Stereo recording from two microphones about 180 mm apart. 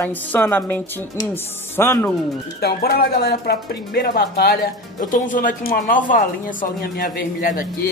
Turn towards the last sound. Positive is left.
turn(degrees=50)  # may be behind; listen again after turning